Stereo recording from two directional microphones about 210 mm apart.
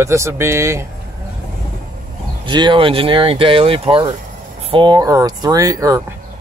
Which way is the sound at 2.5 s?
20° right (ahead or behind).